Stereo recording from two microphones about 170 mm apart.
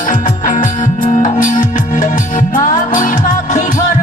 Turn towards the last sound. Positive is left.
turn(degrees=50)  # may be behind; listen again after turning